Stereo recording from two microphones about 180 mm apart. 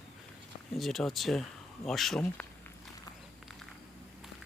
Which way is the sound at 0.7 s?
Centre (ahead or behind).